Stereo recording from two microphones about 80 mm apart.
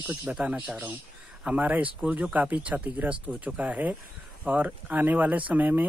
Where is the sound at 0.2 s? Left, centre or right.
Centre.